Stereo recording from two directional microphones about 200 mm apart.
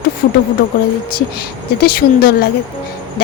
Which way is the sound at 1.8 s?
50° left (ahead or behind).